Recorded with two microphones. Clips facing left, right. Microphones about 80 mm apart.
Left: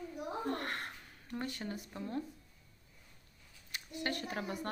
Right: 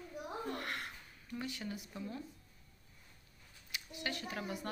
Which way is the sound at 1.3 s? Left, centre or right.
Left.